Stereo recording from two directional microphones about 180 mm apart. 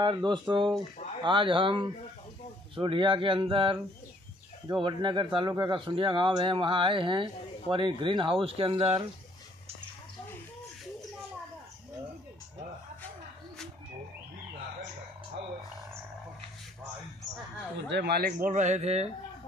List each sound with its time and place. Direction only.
0.0 s speech: 25° right (ahead or behind)
17.8 s speech: 70° right (ahead or behind)
18.5 s speech: 40° right (ahead or behind)